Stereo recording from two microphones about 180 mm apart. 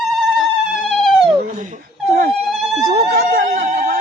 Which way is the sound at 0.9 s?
Centre (ahead or behind).